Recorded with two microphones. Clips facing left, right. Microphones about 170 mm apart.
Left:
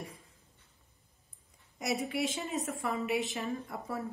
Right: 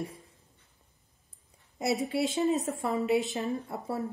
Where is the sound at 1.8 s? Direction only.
30° right (ahead or behind).